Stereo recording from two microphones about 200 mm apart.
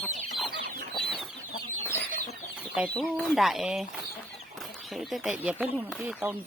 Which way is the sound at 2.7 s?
Centre (ahead or behind).